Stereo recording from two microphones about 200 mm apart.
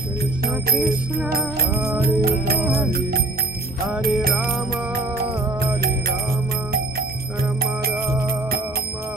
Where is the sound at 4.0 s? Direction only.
45° right (ahead or behind).